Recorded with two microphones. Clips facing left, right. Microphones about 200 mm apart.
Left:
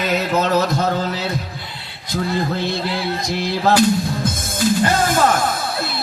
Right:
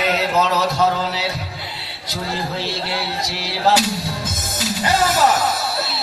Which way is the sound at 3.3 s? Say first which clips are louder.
Left 1 dB; 50° left (ahead or behind).